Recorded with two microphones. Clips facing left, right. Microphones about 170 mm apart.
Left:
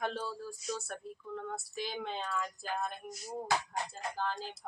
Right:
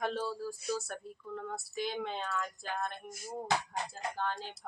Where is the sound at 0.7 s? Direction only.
Centre (ahead or behind).